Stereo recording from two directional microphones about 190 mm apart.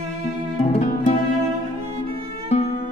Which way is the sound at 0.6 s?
30° left (ahead or behind).